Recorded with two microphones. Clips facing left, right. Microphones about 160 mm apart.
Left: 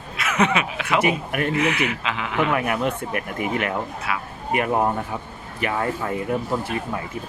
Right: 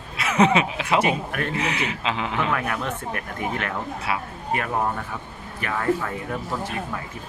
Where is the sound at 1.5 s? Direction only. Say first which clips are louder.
Left 4 dB; 30° right (ahead or behind).